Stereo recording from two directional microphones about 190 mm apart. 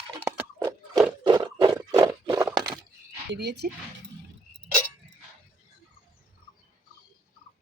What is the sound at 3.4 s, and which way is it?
Speech, 60° right (ahead or behind).